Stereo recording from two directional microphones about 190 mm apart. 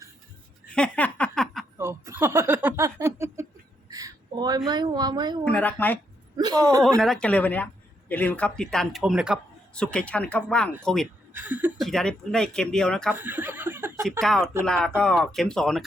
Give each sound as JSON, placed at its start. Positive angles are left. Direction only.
{"t": 0.7, "sound": "a sound", "side_deg": 5}
{"t": 1.8, "sound": "a sound", "side_deg": -15}
{"t": 5.5, "sound": "speech", "side_deg": 10}
{"t": 6.3, "sound": "a man's voice", "side_deg": -20}
{"t": 7.0, "sound": "speech", "side_deg": 5}
{"t": 11.3, "sound": "a woman's voice", "side_deg": -10}
{"t": 11.8, "sound": "speech", "side_deg": 0}
{"t": 13.1, "sound": "speech", "side_deg": -10}
{"t": 14.2, "sound": "speech", "side_deg": 5}